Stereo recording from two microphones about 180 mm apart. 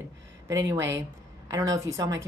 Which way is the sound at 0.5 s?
15° right (ahead or behind).